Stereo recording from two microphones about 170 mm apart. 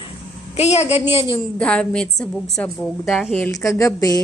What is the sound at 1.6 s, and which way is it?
A woman's voice, 5° left (ahead or behind).